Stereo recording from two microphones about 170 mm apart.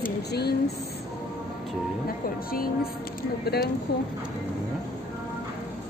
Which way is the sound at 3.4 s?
70° left (ahead or behind).